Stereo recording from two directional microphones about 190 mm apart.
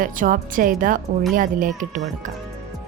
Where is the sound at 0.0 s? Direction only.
45° right (ahead or behind).